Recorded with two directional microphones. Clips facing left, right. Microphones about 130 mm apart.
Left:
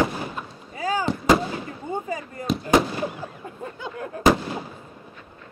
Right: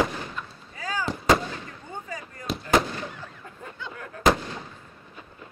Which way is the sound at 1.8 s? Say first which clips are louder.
Left 11 dB; 40° left (ahead or behind).